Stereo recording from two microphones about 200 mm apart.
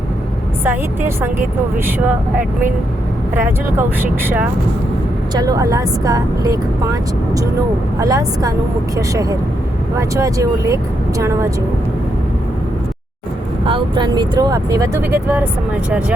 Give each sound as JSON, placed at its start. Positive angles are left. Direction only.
{"t": 0.6, "sound": "a woman's voice", "side_deg": -10}
{"t": 3.3, "sound": "a woman's voice", "side_deg": -10}
{"t": 7.9, "sound": "a woman's voice", "side_deg": -15}
{"t": 13.7, "sound": "speech", "side_deg": -25}